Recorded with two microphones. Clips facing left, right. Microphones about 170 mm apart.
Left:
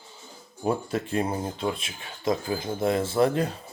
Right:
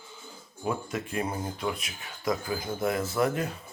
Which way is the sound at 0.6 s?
30° left (ahead or behind).